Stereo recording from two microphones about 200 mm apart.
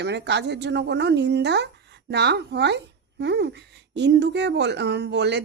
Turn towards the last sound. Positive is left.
turn(degrees=-60)  # may be behind; listen again after turning